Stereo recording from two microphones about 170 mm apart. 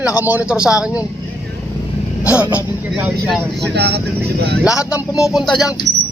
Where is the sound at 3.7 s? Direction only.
75° right (ahead or behind).